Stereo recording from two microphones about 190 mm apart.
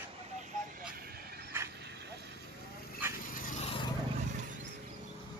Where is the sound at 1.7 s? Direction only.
60° right (ahead or behind).